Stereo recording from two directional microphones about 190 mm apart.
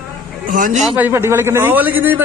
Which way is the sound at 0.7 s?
5° right (ahead or behind).